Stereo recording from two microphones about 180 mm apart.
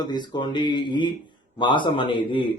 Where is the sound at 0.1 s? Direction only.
25° left (ahead or behind).